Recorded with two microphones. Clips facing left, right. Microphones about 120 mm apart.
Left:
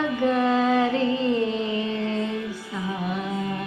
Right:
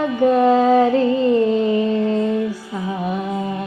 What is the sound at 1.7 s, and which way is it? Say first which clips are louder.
Music: right 9 dB; 45° right (ahead or behind).